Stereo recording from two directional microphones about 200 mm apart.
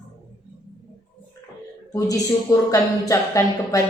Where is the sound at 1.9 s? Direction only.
15° left (ahead or behind).